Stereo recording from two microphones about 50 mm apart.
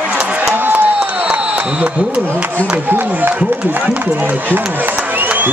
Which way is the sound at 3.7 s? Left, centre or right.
Right.